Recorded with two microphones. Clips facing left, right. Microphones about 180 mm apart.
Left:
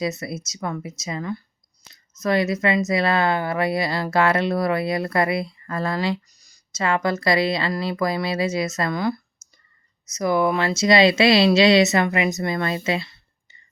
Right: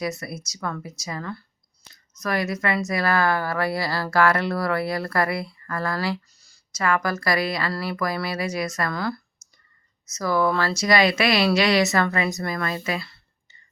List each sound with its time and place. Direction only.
0.0 s speech: 20° left (ahead or behind)